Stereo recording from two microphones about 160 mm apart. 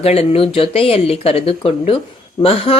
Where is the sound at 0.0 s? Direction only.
40° left (ahead or behind).